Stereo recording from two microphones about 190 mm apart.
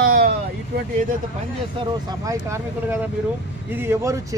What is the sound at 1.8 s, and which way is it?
Speech, 30° right (ahead or behind).